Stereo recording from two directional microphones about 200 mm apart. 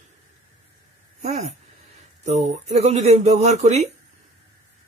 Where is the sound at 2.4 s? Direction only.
35° right (ahead or behind).